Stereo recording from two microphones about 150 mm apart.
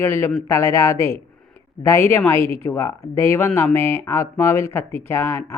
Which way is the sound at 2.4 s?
40° right (ahead or behind).